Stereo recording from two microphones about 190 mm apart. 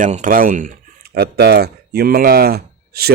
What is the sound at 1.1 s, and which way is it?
A man's voice, 55° right (ahead or behind).